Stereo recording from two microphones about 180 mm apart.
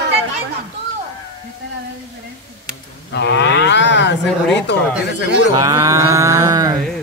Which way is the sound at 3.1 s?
70° left (ahead or behind).